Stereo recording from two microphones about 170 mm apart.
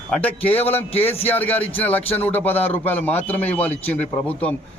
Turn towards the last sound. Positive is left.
turn(degrees=10)  # may be behind; listen again after turning